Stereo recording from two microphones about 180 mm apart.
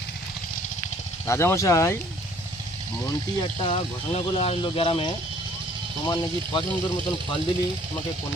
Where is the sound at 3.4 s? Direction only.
30° left (ahead or behind).